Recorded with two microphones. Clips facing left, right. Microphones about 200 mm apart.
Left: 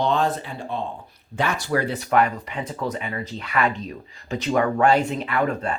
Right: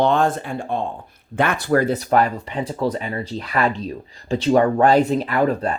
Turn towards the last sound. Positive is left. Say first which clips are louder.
# right 4 dB
turn(degrees=-35)  # may be behind; listen again after turning